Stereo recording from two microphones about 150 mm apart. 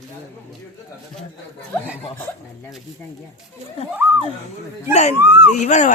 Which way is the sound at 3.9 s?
10° right (ahead or behind).